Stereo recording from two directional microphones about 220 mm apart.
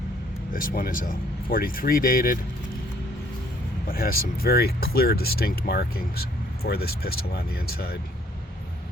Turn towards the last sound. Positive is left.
turn(degrees=45)  # may be behind; listen again after turning